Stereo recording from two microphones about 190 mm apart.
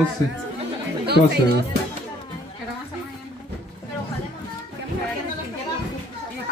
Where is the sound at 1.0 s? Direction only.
60° right (ahead or behind).